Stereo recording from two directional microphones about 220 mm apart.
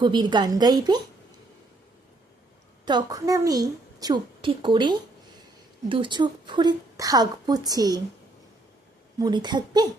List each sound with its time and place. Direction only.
0.0 s a woman's voice: 20° right (ahead or behind)
2.8 s a woman's voice: 15° right (ahead or behind)
9.1 s a woman's voice: 20° right (ahead or behind)